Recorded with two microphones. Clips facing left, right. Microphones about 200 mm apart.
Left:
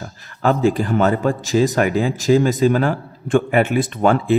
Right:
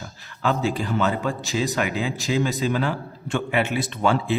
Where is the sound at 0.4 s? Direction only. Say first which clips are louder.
Left 7 dB; 50° left (ahead or behind).